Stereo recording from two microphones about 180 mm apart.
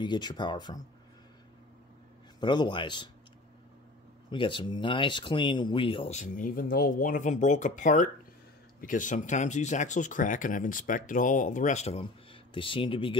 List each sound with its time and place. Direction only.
0.0 s speech: 25° left (ahead or behind)
2.4 s speech: 25° left (ahead or behind)
4.3 s speech: 25° left (ahead or behind)